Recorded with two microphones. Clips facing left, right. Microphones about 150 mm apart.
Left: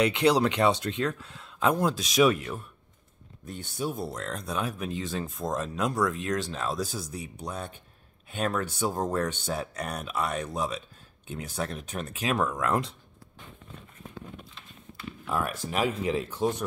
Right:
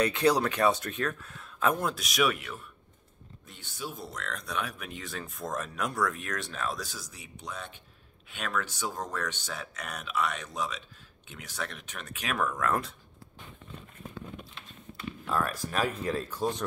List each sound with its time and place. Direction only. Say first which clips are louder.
0.0 s speech: left 2 dB; 15° left (ahead or behind); by 2.6 s 35° left (ahead or behind)
3.4 s speech: left 8 dB; 45° left (ahead or behind); by 12.9 s 20° left (ahead or behind)
15.2 s speech: left 1 dB; 15° left (ahead or behind)